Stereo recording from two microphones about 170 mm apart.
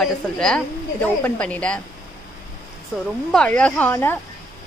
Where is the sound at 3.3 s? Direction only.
5° left (ahead or behind).